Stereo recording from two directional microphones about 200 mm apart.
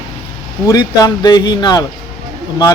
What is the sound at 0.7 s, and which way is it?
Speech, 20° left (ahead or behind).